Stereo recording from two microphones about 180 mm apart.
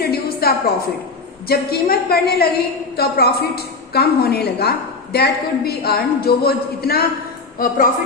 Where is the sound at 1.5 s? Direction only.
60° left (ahead or behind).